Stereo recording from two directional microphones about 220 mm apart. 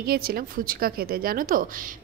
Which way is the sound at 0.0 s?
45° right (ahead or behind).